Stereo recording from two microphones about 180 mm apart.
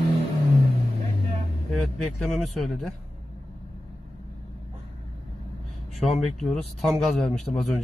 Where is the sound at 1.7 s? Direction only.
Centre (ahead or behind).